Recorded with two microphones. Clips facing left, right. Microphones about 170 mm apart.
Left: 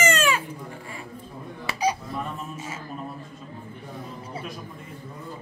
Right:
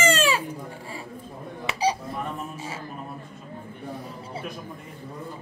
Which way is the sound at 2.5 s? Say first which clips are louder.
Even; 30° right (ahead or behind).